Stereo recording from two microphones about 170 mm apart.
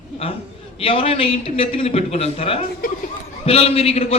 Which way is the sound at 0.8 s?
35° left (ahead or behind).